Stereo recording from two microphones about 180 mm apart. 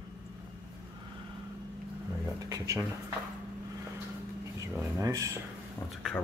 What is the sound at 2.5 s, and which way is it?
Speech, 20° right (ahead or behind).